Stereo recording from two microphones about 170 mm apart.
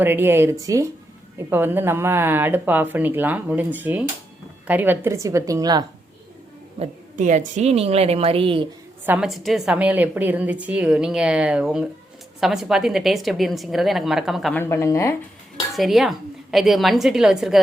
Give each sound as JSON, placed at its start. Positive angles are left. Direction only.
{"t": 0.0, "sound": "a woman's voice", "side_deg": -10}
{"t": 6.7, "sound": "a woman's voice", "side_deg": -45}
{"t": 9.0, "sound": "a woman's voice", "side_deg": -5}
{"t": 14.5, "sound": "a woman's voice", "side_deg": 15}
{"t": 15.7, "sound": "a woman's voice", "side_deg": 0}